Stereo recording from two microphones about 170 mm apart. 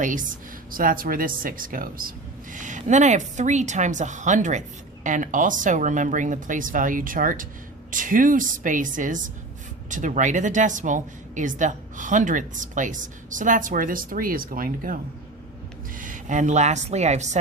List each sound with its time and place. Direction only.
0.0 s speech: 50° right (ahead or behind)
16.0 s a woman's voice: 50° right (ahead or behind)